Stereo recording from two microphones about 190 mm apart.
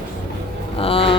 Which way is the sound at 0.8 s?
30° left (ahead or behind).